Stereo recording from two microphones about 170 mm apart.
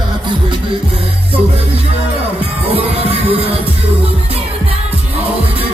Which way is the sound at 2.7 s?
35° right (ahead or behind).